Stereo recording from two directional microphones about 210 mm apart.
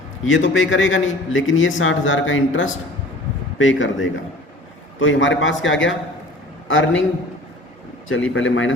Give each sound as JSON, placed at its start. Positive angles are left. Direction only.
{"t": 0.3, "sound": "a man's voice", "side_deg": 65}
{"t": 8.3, "sound": "a man's voice", "side_deg": 65}